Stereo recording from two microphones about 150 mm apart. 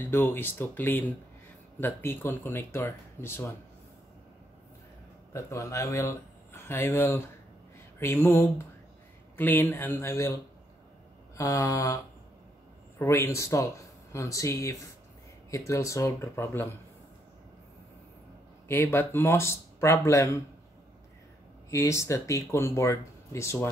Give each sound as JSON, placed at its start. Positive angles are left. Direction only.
{"t": 0.0, "sound": "speech", "side_deg": 15}
{"t": 5.3, "sound": "speech", "side_deg": 20}
{"t": 11.3, "sound": "speech", "side_deg": 20}
{"t": 13.0, "sound": "speech", "side_deg": 20}
{"t": 18.7, "sound": "speech", "side_deg": 15}
{"t": 21.6, "sound": "speech", "side_deg": 20}